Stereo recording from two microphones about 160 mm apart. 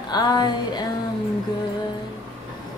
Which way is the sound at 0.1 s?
25° left (ahead or behind).